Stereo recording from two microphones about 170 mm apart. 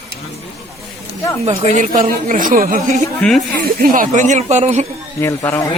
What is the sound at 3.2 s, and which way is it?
Speech, 5° left (ahead or behind).